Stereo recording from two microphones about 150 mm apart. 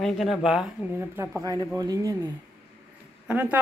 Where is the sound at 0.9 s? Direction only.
15° right (ahead or behind).